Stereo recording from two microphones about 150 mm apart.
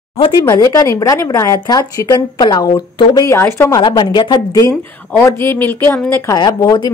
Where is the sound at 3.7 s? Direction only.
30° left (ahead or behind); by 6.0 s 15° left (ahead or behind).